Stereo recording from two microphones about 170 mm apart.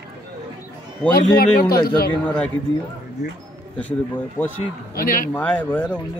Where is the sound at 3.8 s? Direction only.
10° left (ahead or behind).